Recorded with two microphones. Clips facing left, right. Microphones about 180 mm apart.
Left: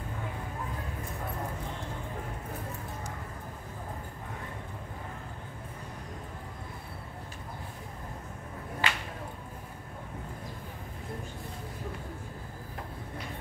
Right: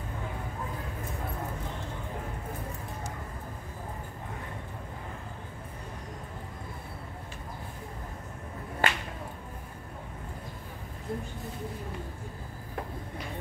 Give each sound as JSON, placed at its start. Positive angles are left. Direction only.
{"t": 8.8, "sound": "finger snapping", "side_deg": -50}